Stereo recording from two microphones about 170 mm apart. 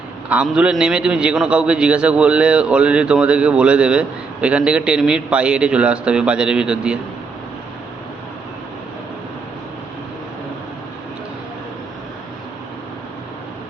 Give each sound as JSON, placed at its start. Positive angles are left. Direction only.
{"t": 0.3, "sound": "a man's voice", "side_deg": -5}